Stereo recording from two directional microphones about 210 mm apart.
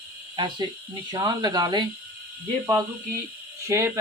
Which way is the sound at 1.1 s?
20° right (ahead or behind).